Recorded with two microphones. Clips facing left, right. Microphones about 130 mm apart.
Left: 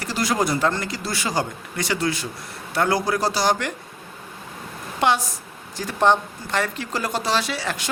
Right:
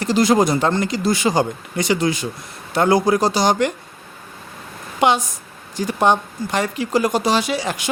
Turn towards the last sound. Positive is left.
turn(degrees=-15)  # may be behind; listen again after turning